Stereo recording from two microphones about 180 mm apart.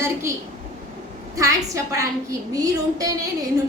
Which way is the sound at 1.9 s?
20° right (ahead or behind).